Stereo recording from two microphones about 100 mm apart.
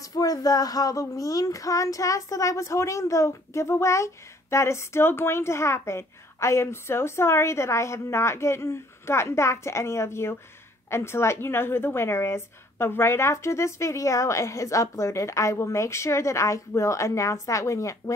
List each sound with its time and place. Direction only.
0.0 s speech: 35° left (ahead or behind)